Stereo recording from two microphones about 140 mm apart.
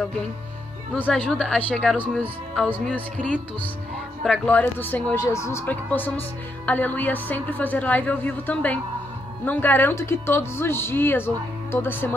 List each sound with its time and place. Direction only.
0.9 s a woman's voice: 10° left (ahead or behind)